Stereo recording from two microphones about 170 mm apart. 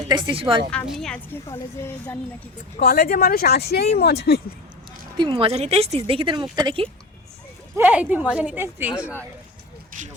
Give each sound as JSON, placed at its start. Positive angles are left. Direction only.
{"t": 0.1, "sound": "a woman's voice", "side_deg": -30}
{"t": 0.9, "sound": "speech", "side_deg": 0}
{"t": 2.7, "sound": "speech", "side_deg": 60}
{"t": 5.1, "sound": "speech", "side_deg": -30}
{"t": 7.8, "sound": "a woman's voice", "side_deg": -10}
{"t": 9.9, "sound": "vehicle", "side_deg": -50}